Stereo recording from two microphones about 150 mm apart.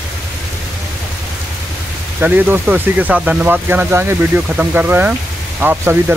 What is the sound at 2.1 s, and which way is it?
Speech, 10° right (ahead or behind).